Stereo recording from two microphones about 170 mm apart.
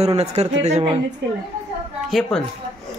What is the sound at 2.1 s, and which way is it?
Speech, centre (ahead or behind).